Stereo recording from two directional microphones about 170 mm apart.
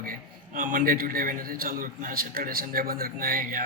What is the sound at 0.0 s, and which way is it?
A man's voice, 55° right (ahead or behind).